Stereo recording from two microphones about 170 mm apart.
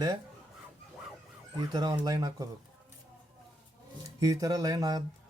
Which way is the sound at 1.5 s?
25° right (ahead or behind).